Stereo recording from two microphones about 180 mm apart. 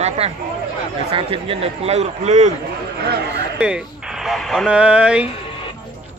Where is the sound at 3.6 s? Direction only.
5° right (ahead or behind).